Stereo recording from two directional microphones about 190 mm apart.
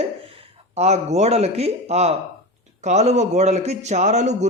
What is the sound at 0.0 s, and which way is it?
A man's voice, 30° right (ahead or behind).